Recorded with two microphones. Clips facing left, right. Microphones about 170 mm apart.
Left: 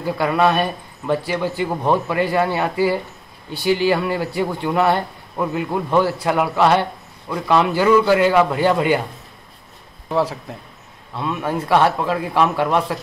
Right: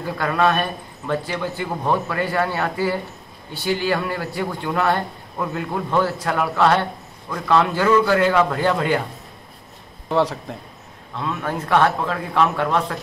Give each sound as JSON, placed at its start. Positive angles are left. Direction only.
{"t": 0.2, "sound": "speech", "side_deg": 15}
{"t": 10.0, "sound": "a man's voice", "side_deg": 5}
{"t": 11.1, "sound": "speech", "side_deg": 15}